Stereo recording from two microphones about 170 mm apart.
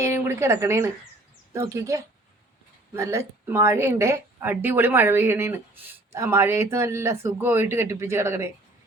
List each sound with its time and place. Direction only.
0.0 s a woman's voice: 15° right (ahead or behind)